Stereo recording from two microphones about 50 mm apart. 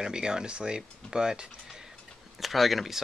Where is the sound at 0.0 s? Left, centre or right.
Centre.